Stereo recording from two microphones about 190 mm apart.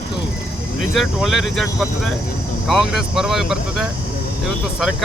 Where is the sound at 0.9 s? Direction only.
Centre (ahead or behind).